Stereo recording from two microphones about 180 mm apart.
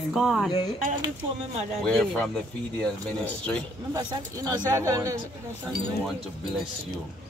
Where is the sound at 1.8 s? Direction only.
5° left (ahead or behind).